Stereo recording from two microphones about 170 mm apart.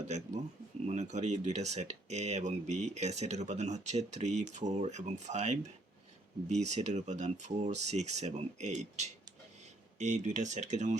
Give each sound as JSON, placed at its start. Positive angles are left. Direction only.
{"t": 0.1, "sound": "speech", "side_deg": -40}